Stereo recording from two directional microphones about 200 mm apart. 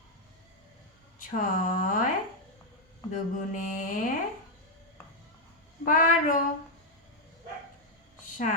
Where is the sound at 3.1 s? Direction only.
40° left (ahead or behind).